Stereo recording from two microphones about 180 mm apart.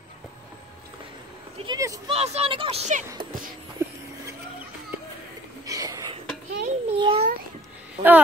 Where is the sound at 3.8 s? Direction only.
15° right (ahead or behind).